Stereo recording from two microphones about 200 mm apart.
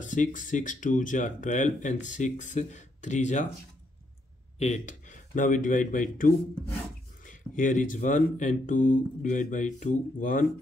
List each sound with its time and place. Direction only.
0.0 s speech: 40° left (ahead or behind)
4.6 s a man's voice: 35° left (ahead or behind)